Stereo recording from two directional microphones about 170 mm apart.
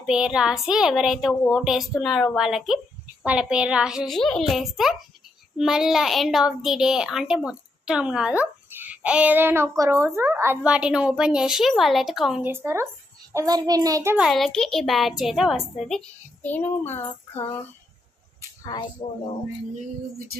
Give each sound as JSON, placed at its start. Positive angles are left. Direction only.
{"t": 0.0, "sound": "a child's voice", "side_deg": -5}
{"t": 12.5, "sound": "a child's voice", "side_deg": -15}
{"t": 14.2, "sound": "a child's voice", "side_deg": 0}
{"t": 18.6, "sound": "speech", "side_deg": 25}